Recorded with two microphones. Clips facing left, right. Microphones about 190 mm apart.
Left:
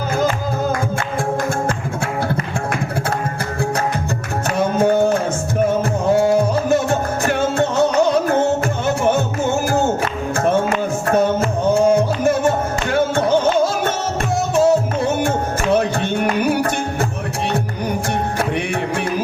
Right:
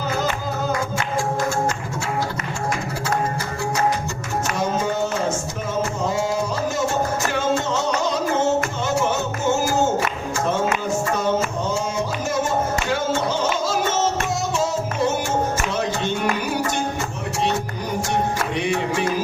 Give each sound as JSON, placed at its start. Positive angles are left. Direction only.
{"t": 4.5, "sound": "music", "side_deg": 55}
{"t": 11.0, "sound": "music", "side_deg": 60}
{"t": 18.3, "sound": "music", "side_deg": 55}